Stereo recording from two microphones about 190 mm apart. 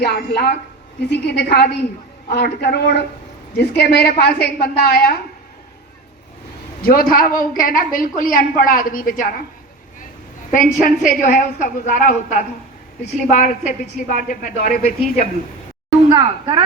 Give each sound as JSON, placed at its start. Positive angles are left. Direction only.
{"t": 0.0, "sound": "a woman's voice", "side_deg": 55}
{"t": 6.8, "sound": "a woman's voice", "side_deg": 50}
{"t": 10.5, "sound": "a woman's voice", "side_deg": 40}
{"t": 16.1, "sound": "speech", "side_deg": -25}